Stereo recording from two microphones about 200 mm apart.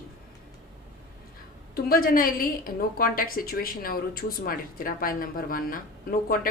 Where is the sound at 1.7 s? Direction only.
45° left (ahead or behind).